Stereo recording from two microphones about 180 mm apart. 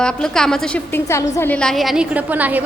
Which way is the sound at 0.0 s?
5° left (ahead or behind).